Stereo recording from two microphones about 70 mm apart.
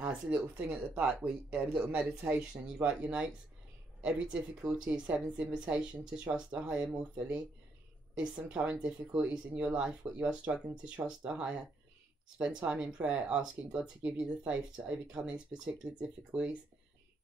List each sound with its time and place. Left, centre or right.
0.0 s speech: centre